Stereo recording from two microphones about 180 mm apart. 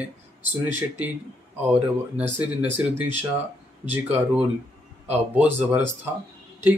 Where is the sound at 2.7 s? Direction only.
10° right (ahead or behind).